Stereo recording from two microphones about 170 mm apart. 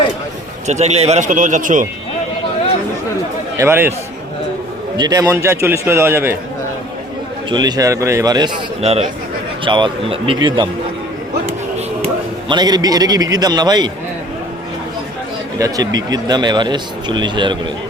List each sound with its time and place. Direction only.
0.7 s a man's voice: 40° right (ahead or behind)
3.6 s a man's voice: 15° right (ahead or behind)
4.9 s a man's voice: 20° right (ahead or behind)
7.5 s a man's voice: 20° right (ahead or behind)
8.8 s a man's voice: 40° right (ahead or behind)
12.5 s a man's voice: 25° right (ahead or behind)
15.5 s a man's voice: 20° right (ahead or behind)